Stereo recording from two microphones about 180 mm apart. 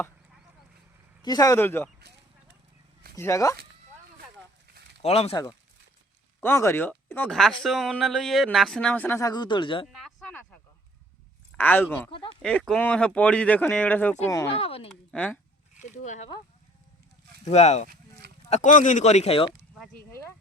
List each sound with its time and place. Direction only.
1.2 s speech: 20° left (ahead or behind)
3.2 s speech: 15° left (ahead or behind)
5.0 s speech: 35° left (ahead or behind)
5.3 s speech: 20° left (ahead or behind)
9.9 s a sound: centre (ahead or behind)
11.5 s speech: 10° left (ahead or behind)
12.1 s speech: 30° left (ahead or behind)
12.4 s speech: 5° left (ahead or behind)
14.5 s speech: 30° left (ahead or behind)
15.1 s speech: 5° left (ahead or behind)
15.8 s speech: 45° left (ahead or behind)
17.4 s speech: 40° left (ahead or behind)